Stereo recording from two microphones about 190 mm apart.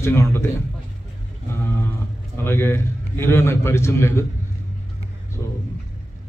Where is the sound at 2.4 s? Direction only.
10° left (ahead or behind).